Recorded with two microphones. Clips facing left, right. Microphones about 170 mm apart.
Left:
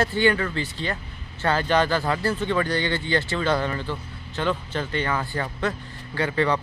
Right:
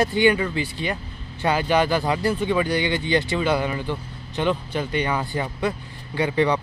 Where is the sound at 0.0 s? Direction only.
15° right (ahead or behind).